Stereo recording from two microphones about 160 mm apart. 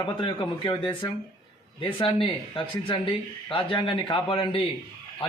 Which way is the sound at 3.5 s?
30° left (ahead or behind).